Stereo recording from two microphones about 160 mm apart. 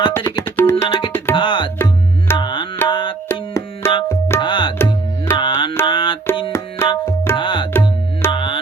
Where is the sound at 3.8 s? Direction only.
15° left (ahead or behind).